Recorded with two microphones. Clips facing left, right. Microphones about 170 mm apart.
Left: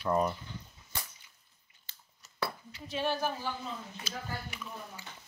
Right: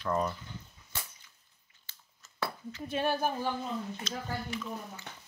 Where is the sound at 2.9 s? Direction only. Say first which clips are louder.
Right 2 dB; 50° right (ahead or behind).